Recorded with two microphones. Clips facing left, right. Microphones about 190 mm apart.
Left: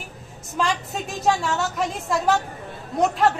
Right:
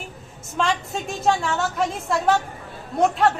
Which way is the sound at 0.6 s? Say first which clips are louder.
Right 1 dB; centre (ahead or behind).